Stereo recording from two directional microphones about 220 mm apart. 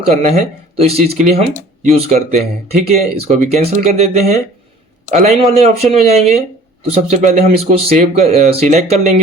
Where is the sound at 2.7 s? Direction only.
30° right (ahead or behind).